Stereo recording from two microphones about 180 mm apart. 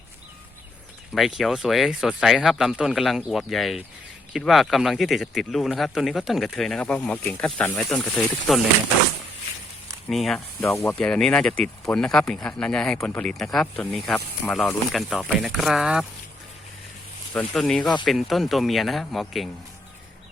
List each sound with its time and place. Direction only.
1.1 s speech: centre (ahead or behind)
10.1 s speech: centre (ahead or behind)
17.3 s speech: 5° left (ahead or behind)